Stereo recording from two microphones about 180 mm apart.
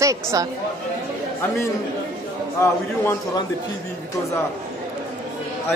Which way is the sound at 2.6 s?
15° left (ahead or behind).